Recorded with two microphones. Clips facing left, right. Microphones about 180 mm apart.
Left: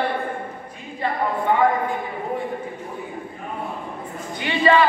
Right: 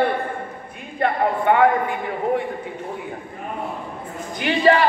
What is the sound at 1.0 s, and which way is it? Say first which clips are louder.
Speech: right 3 dB; 65° right (ahead or behind).